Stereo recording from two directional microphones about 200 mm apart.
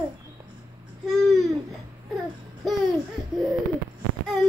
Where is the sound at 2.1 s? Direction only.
Centre (ahead or behind).